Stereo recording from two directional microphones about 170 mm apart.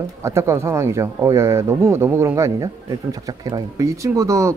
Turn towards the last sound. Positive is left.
turn(degrees=-15)  # may be behind; listen again after turning